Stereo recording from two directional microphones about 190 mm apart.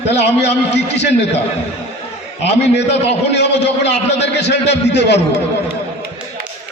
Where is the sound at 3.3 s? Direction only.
65° left (ahead or behind).